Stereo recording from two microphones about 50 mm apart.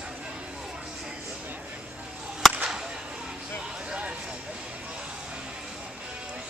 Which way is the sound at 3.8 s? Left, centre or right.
Right.